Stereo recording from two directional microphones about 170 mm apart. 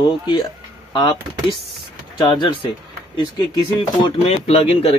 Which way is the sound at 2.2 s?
25° left (ahead or behind).